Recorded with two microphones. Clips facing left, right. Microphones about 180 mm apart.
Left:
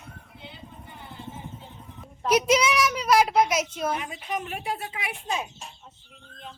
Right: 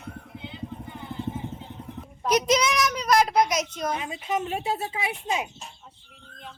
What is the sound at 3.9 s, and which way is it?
A woman's voice, 25° right (ahead or behind).